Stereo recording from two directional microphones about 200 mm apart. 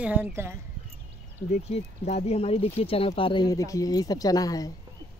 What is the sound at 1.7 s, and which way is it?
Speech, 30° left (ahead or behind).